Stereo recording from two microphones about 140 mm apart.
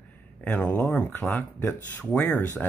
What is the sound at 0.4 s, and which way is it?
Speech, 10° left (ahead or behind).